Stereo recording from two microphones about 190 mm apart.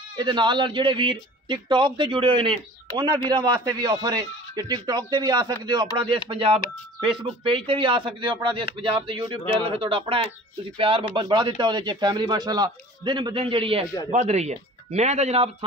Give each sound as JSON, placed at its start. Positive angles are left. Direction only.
{"t": 0.2, "sound": "speech", "side_deg": -25}